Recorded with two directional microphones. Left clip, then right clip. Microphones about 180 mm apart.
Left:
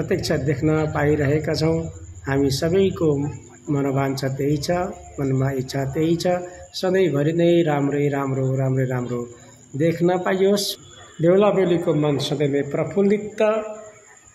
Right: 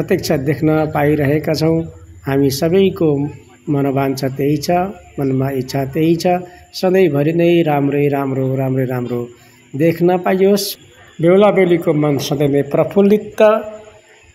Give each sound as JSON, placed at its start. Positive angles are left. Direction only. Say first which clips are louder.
{"t": 0.0, "sound": "speech", "louder": "right 6 dB", "side_deg": -35}